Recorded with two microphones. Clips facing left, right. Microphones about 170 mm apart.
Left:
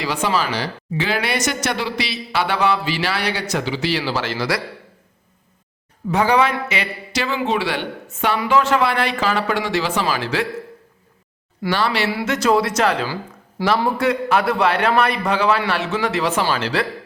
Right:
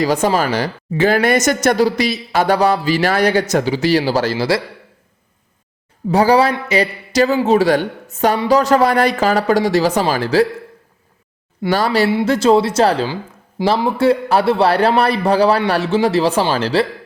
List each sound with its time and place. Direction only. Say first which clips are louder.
0.0 s speech: right 6 dB; 40° right (ahead or behind)
6.1 s a man's voice: right 4 dB; 35° right (ahead or behind)
11.7 s a man's voice: right 6 dB; 40° right (ahead or behind)
13.6 s speech: right 3 dB; 20° right (ahead or behind)
14.0 s a man's voice: right 5 dB; 30° right (ahead or behind)